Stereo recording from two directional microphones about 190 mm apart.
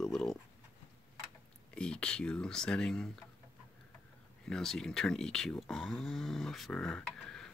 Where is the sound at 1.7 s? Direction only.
5° left (ahead or behind).